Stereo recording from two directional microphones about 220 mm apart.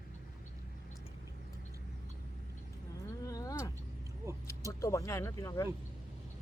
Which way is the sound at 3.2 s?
15° left (ahead or behind).